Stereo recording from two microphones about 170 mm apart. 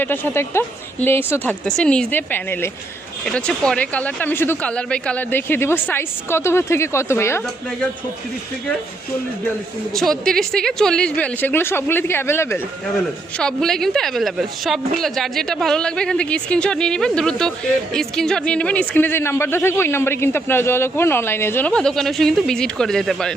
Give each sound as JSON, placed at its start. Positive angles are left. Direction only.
{"t": 0.0, "sound": "a man's voice", "side_deg": 15}
{"t": 9.9, "sound": "a man's voice", "side_deg": 0}
{"t": 13.4, "sound": "a woman's voice", "side_deg": 5}